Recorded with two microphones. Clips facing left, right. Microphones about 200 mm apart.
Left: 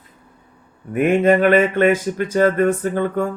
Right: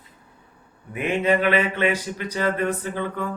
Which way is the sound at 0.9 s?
50° left (ahead or behind).